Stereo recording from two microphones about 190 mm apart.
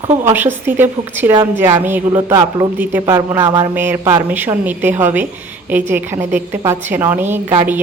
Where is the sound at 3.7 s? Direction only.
10° right (ahead or behind).